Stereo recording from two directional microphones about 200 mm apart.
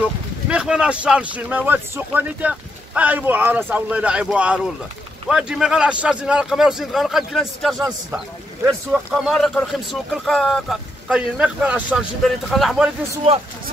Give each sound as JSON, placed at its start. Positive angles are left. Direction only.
{"t": 0.5, "sound": "a man's voice", "side_deg": -5}
{"t": 13.2, "sound": "speech", "side_deg": -25}